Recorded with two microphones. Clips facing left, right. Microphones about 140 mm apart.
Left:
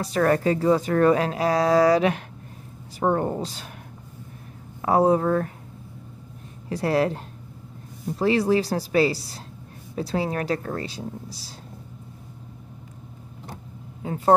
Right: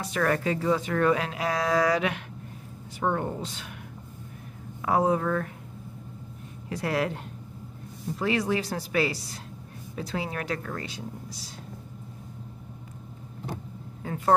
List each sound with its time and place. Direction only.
0.0 s speech: 35° left (ahead or behind)
4.8 s speech: 35° left (ahead or behind)
6.7 s speech: 35° left (ahead or behind)
8.2 s speech: 35° left (ahead or behind)
14.0 s speech: 30° left (ahead or behind)